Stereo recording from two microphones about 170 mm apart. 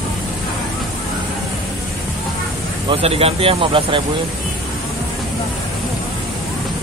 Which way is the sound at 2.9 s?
35° right (ahead or behind).